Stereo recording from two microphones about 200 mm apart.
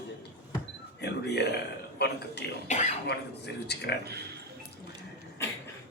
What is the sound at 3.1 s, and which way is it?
Speech, 55° left (ahead or behind).